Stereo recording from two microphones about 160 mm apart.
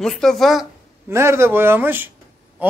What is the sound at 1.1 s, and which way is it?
Speech, 15° right (ahead or behind).